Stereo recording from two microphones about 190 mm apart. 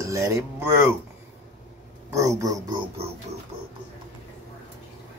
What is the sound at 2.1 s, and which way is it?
Speech, 15° right (ahead or behind).